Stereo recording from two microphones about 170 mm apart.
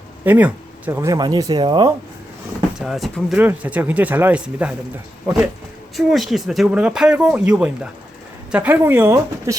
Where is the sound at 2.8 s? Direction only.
Centre (ahead or behind).